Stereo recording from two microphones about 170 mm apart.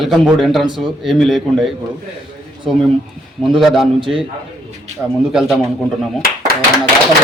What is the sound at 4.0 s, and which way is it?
Speech, 30° right (ahead or behind).